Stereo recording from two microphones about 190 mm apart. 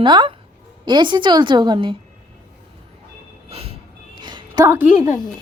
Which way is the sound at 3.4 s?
30° right (ahead or behind).